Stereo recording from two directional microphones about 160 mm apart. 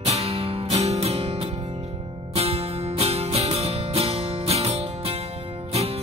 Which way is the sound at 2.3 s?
40° right (ahead or behind).